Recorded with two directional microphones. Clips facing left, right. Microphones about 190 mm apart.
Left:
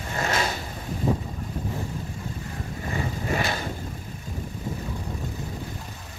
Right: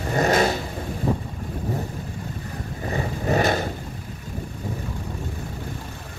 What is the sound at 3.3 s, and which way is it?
Vehicle, 40° right (ahead or behind).